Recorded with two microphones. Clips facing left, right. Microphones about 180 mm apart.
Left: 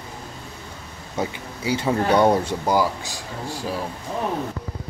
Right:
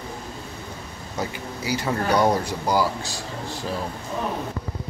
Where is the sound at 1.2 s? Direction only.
25° left (ahead or behind).